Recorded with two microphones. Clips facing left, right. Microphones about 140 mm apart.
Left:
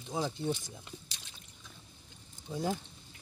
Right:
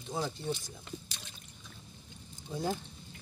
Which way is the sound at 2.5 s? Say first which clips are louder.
Even; centre (ahead or behind).